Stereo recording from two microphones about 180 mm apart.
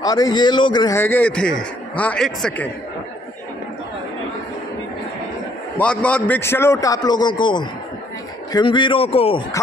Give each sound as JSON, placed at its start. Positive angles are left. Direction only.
{"t": 0.0, "sound": "a man's voice", "side_deg": 20}
{"t": 5.8, "sound": "a man's voice", "side_deg": 5}